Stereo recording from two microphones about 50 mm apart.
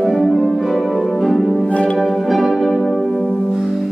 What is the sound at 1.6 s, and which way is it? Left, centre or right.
Music, left.